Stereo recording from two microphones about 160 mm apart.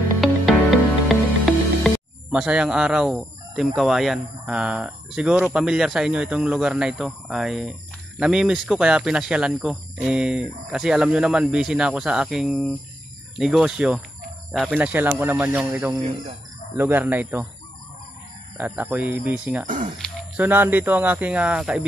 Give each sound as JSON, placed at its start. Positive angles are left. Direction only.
{"t": 0.2, "sound": "music", "side_deg": 0}
{"t": 2.3, "sound": "speech", "side_deg": -5}
{"t": 18.6, "sound": "speech", "side_deg": -10}
{"t": 19.6, "sound": "a sound", "side_deg": -55}
{"t": 20.3, "sound": "speech", "side_deg": -10}